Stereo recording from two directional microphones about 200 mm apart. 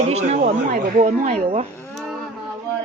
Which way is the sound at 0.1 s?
35° right (ahead or behind).